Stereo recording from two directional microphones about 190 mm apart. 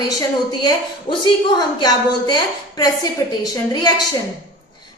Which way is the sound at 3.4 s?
20° left (ahead or behind).